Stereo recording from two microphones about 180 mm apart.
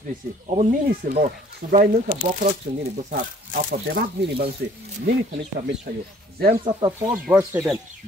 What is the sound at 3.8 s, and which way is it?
Speech, 60° right (ahead or behind).